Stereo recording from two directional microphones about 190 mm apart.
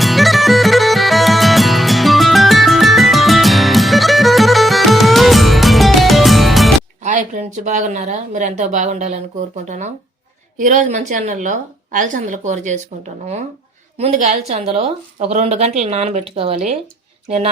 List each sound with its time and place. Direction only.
0.0 s music: centre (ahead or behind)
7.0 s a woman's voice: 40° right (ahead or behind)
14.0 s a woman's voice: 35° right (ahead or behind)